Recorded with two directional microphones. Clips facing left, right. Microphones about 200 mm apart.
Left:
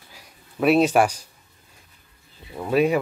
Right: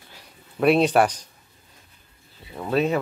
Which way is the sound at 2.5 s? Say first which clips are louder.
Left 2 dB; 10° left (ahead or behind).